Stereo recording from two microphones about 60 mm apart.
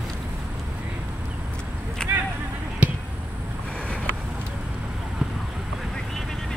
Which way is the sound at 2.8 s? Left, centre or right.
Right.